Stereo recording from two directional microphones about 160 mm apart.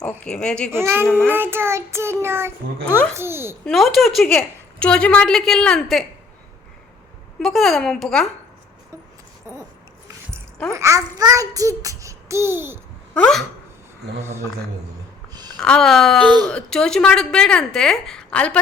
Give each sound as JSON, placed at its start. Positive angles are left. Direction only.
{"t": 0.0, "sound": "a woman's voice", "side_deg": 5}
{"t": 0.7, "sound": "child singing", "side_deg": -15}
{"t": 1.0, "sound": "a woman's voice", "side_deg": 5}
{"t": 1.3, "sound": "child singing", "side_deg": -15}
{"t": 3.7, "sound": "a woman's voice", "side_deg": 0}
{"t": 7.3, "sound": "a woman's voice", "side_deg": 0}
{"t": 10.7, "sound": "a child's voice", "side_deg": -20}
{"t": 13.1, "sound": "a woman's voice", "side_deg": 5}
{"t": 14.2, "sound": "child singing", "side_deg": -15}
{"t": 15.3, "sound": "a sound", "side_deg": -25}
{"t": 15.5, "sound": "a woman's voice", "side_deg": 5}